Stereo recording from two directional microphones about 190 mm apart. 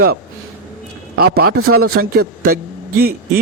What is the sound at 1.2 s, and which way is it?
A man's voice, 55° right (ahead or behind).